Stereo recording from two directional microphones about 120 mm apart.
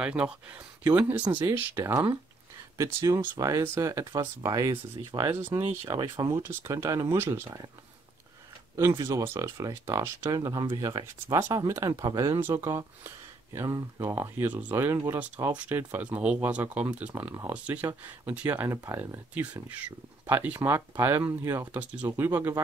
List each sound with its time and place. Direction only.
0.0 s speech: 10° right (ahead or behind)
2.8 s speech: 25° right (ahead or behind)
6.3 s speech: 20° right (ahead or behind)
8.7 s speech: 25° right (ahead or behind)
19.3 s speech: 10° right (ahead or behind)